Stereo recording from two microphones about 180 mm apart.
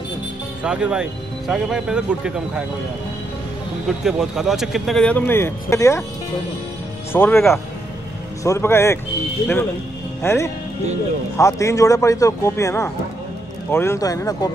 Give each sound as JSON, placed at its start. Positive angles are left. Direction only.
{"t": 0.7, "sound": "a man's voice", "side_deg": -5}
{"t": 4.0, "sound": "a man's voice", "side_deg": 0}
{"t": 7.1, "sound": "speech", "side_deg": 10}
{"t": 10.2, "sound": "speech", "side_deg": 15}